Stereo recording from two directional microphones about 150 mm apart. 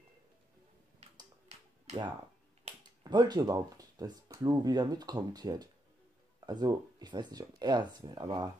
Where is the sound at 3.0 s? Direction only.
25° right (ahead or behind).